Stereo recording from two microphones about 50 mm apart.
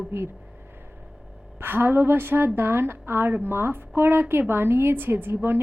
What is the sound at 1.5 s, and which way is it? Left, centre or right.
A woman's voice, right.